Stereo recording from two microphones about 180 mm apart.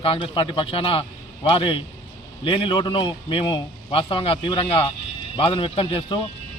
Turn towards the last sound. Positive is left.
turn(degrees=30)  # may be behind; listen again after turning